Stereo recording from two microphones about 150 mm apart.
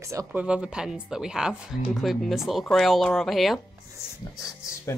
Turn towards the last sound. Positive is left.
turn(degrees=20)  # may be behind; listen again after turning